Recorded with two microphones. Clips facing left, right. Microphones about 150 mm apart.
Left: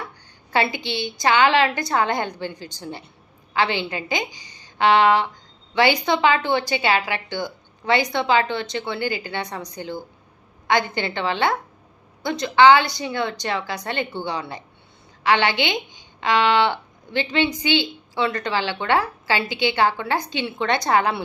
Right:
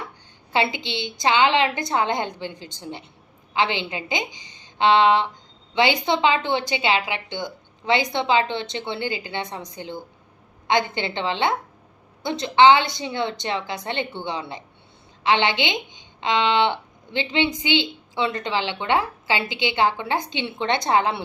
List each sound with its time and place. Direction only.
0.5 s a woman's voice: 20° right (ahead or behind)